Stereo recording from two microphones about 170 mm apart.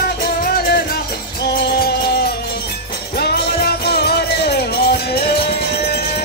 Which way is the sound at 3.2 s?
70° left (ahead or behind).